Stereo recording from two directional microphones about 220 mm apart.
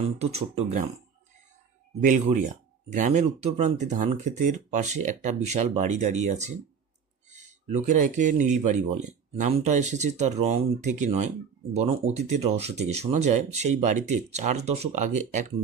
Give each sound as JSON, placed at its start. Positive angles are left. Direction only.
{"t": 0.2, "sound": "speech", "side_deg": -30}
{"t": 2.0, "sound": "speech", "side_deg": -35}
{"t": 7.7, "sound": "speech", "side_deg": -30}